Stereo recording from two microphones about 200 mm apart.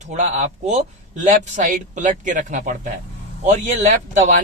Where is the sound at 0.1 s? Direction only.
35° right (ahead or behind).